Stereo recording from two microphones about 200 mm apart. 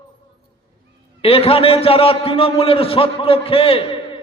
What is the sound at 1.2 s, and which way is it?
A man's voice, 30° left (ahead or behind).